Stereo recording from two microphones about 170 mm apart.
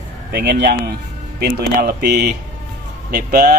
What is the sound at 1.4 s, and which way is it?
Speech, 65° right (ahead or behind).